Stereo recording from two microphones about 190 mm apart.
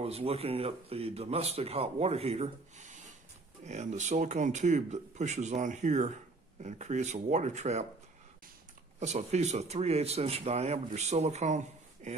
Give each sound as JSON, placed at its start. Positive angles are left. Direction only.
{"t": 0.0, "sound": "speech", "side_deg": -30}
{"t": 9.0, "sound": "speech", "side_deg": -35}